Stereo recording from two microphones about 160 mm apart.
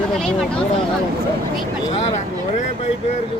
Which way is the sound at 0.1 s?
Centre (ahead or behind).